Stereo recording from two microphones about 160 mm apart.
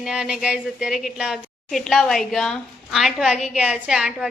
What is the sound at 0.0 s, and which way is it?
A woman's voice, 5° right (ahead or behind).